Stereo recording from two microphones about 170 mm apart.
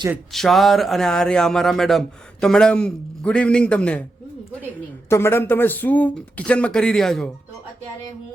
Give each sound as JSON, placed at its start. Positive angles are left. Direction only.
{"t": 0.3, "sound": "speech", "side_deg": 0}
{"t": 5.0, "sound": "speech", "side_deg": 15}